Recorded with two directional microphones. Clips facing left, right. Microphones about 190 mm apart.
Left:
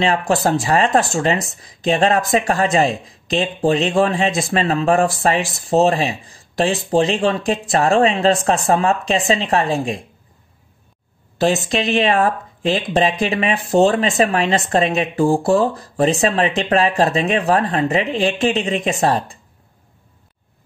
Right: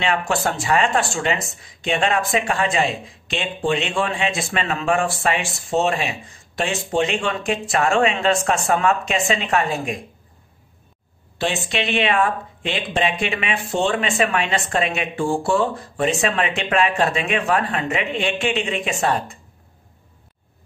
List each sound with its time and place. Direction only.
0.0 s speech: 35° left (ahead or behind)
11.3 s speech: 40° left (ahead or behind)